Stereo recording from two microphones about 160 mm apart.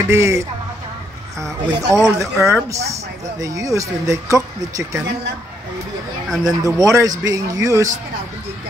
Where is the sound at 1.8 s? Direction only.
20° right (ahead or behind).